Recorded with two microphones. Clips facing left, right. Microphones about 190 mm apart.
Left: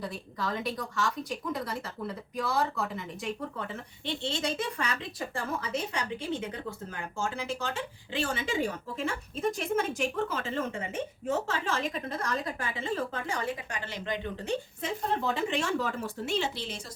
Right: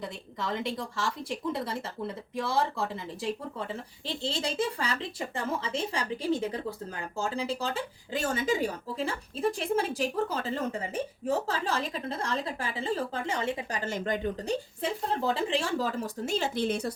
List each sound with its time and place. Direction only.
0.0 s speech: 25° right (ahead or behind); by 16.9 s 55° right (ahead or behind)